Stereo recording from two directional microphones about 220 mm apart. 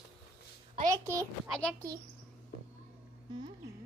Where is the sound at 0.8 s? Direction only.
15° right (ahead or behind).